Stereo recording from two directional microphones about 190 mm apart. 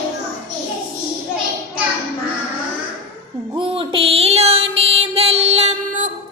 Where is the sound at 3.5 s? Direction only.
25° right (ahead or behind).